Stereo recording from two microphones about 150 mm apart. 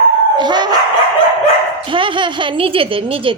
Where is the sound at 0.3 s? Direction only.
30° right (ahead or behind).